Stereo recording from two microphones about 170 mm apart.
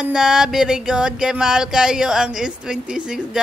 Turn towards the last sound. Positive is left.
turn(degrees=-5)  # may be behind; listen again after turning